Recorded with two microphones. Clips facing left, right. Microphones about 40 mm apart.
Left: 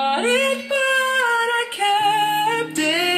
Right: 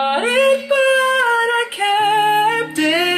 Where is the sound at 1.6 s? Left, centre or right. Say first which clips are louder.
Right 2 dB; centre.